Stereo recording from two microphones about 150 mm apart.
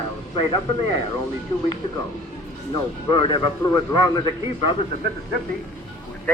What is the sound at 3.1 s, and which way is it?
A man's voice, 35° left (ahead or behind).